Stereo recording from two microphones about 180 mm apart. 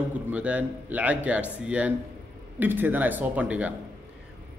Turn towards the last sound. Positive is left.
turn(degrees=-5)  # may be behind; listen again after turning